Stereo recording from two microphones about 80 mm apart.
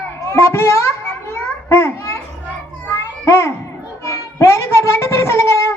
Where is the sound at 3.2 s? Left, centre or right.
Left.